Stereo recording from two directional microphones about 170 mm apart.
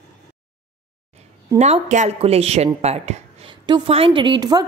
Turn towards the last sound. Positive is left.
turn(degrees=-25)  # may be behind; listen again after turning